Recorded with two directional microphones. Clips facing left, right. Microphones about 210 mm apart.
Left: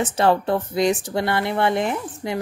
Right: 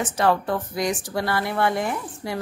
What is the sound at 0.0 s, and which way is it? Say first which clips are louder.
Speech: left 3 dB; 25° left (ahead or behind).